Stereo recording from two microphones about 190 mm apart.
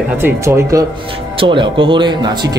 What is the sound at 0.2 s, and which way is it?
Speech, 15° right (ahead or behind).